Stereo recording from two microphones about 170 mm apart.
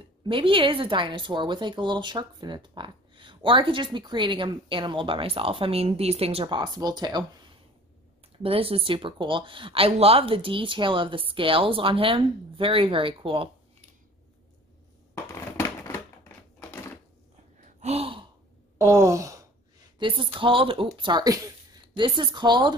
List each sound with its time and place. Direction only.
0.3 s a woman's voice: 30° right (ahead or behind)
8.4 s speech: 35° right (ahead or behind)
15.3 s crushing: 15° left (ahead or behind)
17.6 s gasp: 40° right (ahead or behind)
18.8 s a woman's voice: 15° right (ahead or behind)